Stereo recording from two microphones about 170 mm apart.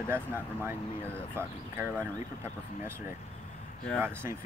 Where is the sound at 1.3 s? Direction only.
15° right (ahead or behind).